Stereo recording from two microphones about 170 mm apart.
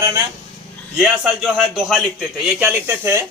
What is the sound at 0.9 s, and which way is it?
A man's voice, 5° right (ahead or behind).